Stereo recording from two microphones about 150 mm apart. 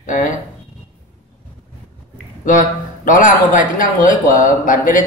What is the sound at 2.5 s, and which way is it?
Speech, 60° left (ahead or behind).